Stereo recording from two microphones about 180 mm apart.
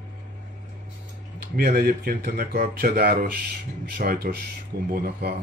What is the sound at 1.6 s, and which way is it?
Speech, 55° right (ahead or behind).